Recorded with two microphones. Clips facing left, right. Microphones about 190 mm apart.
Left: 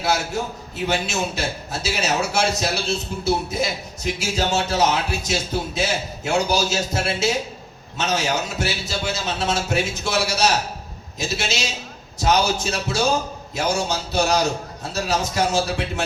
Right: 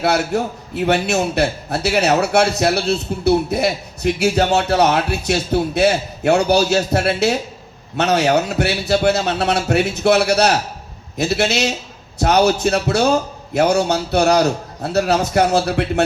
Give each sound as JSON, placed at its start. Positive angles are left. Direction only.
{"t": 0.0, "sound": "a man's voice", "side_deg": -60}